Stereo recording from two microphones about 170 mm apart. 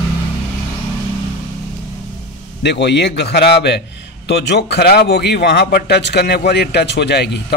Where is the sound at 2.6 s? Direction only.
80° left.